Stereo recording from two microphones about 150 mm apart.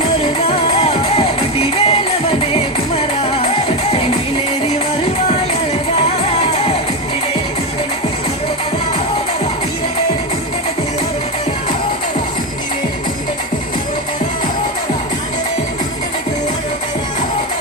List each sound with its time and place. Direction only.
0.4 s music: 45° left (ahead or behind)
6.5 s music: 45° left (ahead or behind)